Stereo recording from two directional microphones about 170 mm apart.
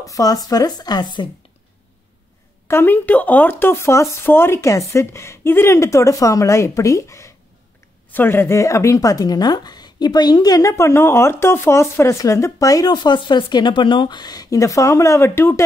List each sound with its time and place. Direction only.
0.0 s speech: 20° left (ahead or behind)
2.7 s speech: 10° left (ahead or behind)